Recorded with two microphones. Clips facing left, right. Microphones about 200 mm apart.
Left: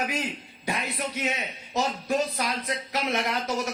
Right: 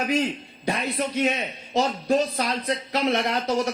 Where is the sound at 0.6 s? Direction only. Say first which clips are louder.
Right 5 dB; 30° right (ahead or behind).